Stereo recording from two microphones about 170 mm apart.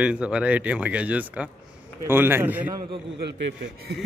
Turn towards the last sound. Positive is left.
turn(degrees=-70)  # may be behind; listen again after turning